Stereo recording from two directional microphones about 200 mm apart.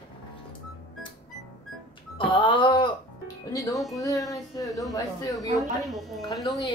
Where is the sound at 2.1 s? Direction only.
25° left (ahead or behind).